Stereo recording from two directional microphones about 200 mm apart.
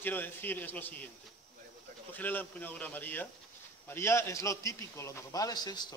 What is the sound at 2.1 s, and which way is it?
A man's voice, 10° left (ahead or behind).